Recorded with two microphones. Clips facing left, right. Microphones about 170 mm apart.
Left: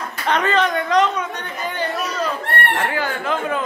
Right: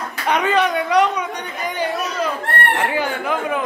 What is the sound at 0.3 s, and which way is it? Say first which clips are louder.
Speech: right 1 dB; 10° right (ahead or behind).